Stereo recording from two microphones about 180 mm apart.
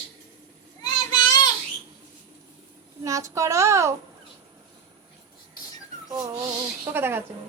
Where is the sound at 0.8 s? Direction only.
25° left (ahead or behind).